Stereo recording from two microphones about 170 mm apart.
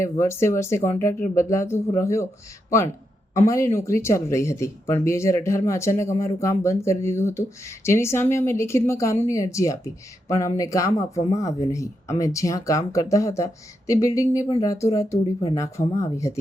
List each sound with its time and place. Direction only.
0.0 s speech: 15° left (ahead or behind)
3.3 s speech: 15° left (ahead or behind)